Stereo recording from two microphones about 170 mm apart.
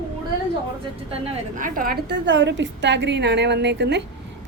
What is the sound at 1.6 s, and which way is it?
A woman's voice, 55° right (ahead or behind).